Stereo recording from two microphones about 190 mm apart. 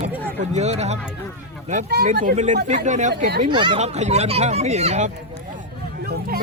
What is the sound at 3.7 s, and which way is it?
Speech, 35° right (ahead or behind).